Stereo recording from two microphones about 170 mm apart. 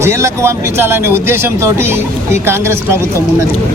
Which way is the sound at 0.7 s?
15° right (ahead or behind).